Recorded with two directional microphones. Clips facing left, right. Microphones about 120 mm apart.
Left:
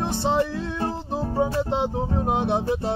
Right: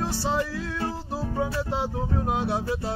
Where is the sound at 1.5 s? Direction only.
20° left (ahead or behind).